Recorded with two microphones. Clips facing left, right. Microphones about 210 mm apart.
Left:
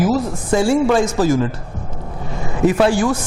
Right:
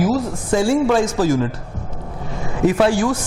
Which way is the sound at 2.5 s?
20° left (ahead or behind).